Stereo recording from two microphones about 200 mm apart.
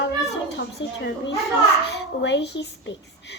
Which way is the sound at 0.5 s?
60° left (ahead or behind).